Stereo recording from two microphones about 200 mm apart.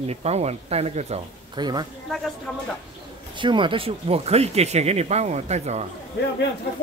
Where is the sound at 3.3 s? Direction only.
25° right (ahead or behind).